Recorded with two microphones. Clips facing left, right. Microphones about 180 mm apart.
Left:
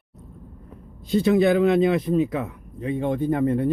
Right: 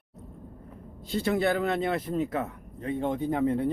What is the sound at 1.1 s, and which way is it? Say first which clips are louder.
A man's voice: left 8 dB; 15° left (ahead or behind).